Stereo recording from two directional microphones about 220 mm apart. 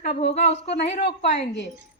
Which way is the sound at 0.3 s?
30° left (ahead or behind).